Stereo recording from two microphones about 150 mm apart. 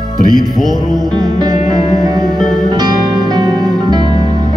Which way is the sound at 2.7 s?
25° right (ahead or behind).